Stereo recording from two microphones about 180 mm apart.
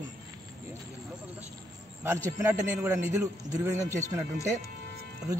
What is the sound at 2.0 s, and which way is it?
Speech, 15° right (ahead or behind).